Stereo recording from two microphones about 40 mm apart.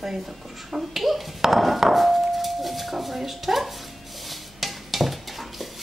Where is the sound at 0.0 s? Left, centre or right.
Centre.